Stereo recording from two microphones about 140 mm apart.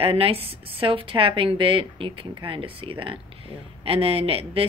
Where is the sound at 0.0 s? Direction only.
40° right (ahead or behind).